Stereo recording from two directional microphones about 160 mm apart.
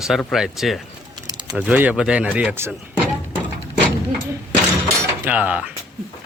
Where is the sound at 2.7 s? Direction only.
10° right (ahead or behind).